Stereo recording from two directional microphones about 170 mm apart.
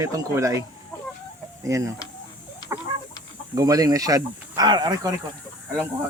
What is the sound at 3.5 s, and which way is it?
Speech, 20° right (ahead or behind).